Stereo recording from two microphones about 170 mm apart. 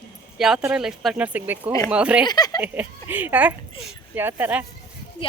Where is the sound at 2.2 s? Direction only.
25° left (ahead or behind).